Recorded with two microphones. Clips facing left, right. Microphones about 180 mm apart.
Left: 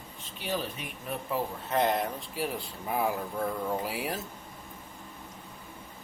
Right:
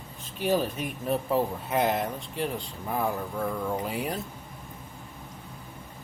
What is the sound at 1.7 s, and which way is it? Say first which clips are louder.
Speech: even; 5° right (ahead or behind).